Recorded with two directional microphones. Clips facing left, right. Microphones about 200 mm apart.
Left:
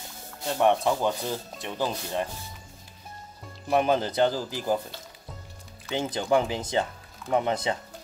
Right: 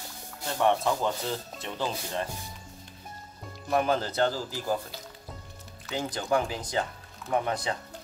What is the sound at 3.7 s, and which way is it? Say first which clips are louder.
Speech: left 3 dB; 20° left (ahead or behind).